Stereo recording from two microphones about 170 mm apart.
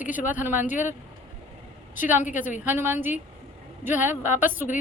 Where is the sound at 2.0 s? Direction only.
10° right (ahead or behind).